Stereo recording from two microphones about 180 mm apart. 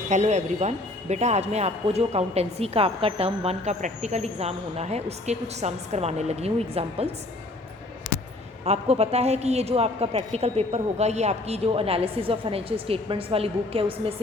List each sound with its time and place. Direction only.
0.1 s speech: 40° right (ahead or behind)
8.6 s speech: 35° right (ahead or behind)